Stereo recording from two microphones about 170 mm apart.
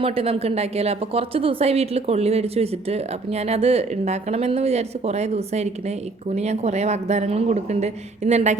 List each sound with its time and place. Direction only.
0.0 s a woman's voice: 35° right (ahead or behind)